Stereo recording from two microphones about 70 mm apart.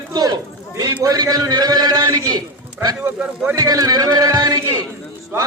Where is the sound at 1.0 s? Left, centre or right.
Right.